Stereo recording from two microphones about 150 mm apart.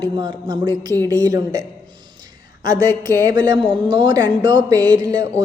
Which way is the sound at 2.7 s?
25° right (ahead or behind).